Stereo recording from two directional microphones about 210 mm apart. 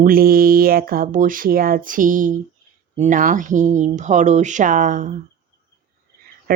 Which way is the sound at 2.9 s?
35° right (ahead or behind).